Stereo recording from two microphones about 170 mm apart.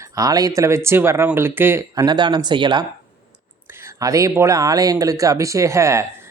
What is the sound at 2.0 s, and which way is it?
Speech, 25° right (ahead or behind).